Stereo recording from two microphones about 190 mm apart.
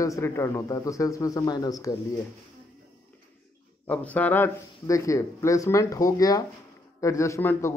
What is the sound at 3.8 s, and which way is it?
A man's voice, 10° left (ahead or behind).